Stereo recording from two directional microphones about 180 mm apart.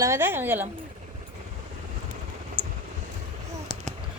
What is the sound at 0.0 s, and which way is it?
Speech, 15° right (ahead or behind).